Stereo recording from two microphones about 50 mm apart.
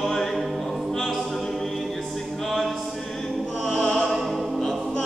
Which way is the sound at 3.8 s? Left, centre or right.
Centre.